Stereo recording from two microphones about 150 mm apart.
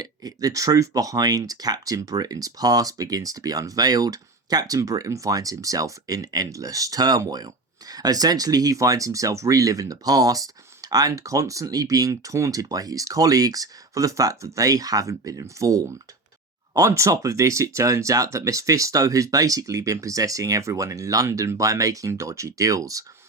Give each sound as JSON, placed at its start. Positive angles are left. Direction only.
{"t": 0.0, "sound": "speech", "side_deg": -25}